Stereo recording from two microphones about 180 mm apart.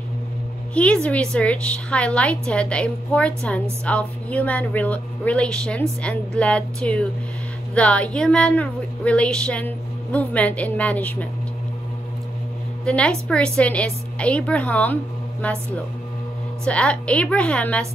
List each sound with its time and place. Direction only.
0.7 s a woman's voice: 5° left (ahead or behind)
12.8 s a woman's voice: 5° left (ahead or behind)
16.6 s a woman's voice: 5° left (ahead or behind)